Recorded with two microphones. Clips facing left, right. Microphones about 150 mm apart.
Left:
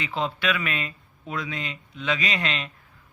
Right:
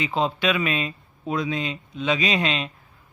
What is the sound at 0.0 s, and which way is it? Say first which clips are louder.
A man's voice: right 4 dB; 20° right (ahead or behind).